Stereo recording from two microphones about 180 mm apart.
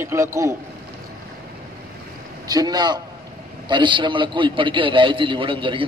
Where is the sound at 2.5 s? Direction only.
20° right (ahead or behind).